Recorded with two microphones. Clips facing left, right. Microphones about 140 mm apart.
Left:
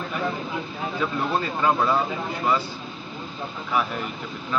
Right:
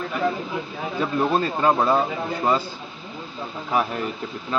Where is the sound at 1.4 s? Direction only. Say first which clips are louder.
Right 2 dB; 30° right (ahead or behind).